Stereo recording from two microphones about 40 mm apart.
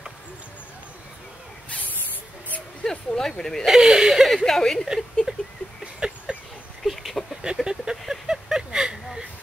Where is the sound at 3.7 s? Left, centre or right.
Centre.